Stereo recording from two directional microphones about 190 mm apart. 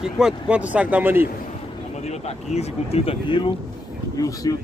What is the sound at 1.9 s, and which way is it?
Speech, 35° left (ahead or behind).